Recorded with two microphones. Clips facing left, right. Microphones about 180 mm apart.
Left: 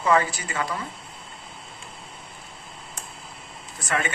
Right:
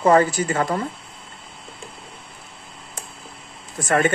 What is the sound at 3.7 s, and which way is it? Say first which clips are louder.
Speech: right 8 dB; 50° right (ahead or behind).